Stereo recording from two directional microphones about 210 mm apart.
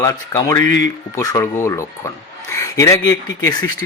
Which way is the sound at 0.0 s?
15° left (ahead or behind).